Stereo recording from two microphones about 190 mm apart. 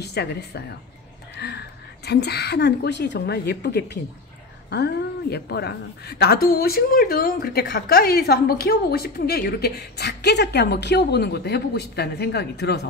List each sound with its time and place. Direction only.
0.0 s a woman's voice: 60° left (ahead or behind)